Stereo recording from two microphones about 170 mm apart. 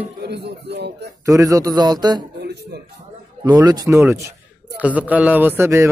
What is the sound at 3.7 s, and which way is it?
A man's voice, 20° right (ahead or behind).